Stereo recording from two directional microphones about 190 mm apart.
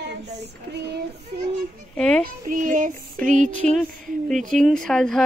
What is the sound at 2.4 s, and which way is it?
Speech, 45° right (ahead or behind).